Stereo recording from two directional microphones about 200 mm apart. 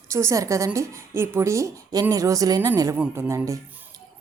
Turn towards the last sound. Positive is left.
turn(degrees=-15)  # may be behind; listen again after turning